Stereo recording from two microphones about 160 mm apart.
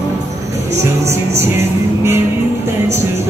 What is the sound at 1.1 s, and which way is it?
Music, 15° right (ahead or behind).